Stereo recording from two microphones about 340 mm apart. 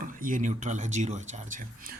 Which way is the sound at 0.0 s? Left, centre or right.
Right.